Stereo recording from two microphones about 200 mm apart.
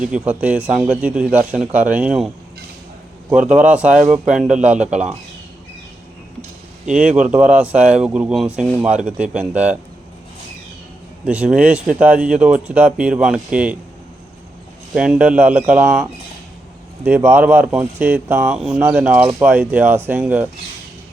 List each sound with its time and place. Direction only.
0.0 s speech: 5° right (ahead or behind)
3.5 s speech: 5° right (ahead or behind)
4.4 s speech: 40° right (ahead or behind)
4.6 s speech: 5° right (ahead or behind)
4.9 s speech: 35° right (ahead or behind)
6.8 s speech: 5° right (ahead or behind)
11.3 s speech: 5° right (ahead or behind)
14.9 s speech: 5° right (ahead or behind)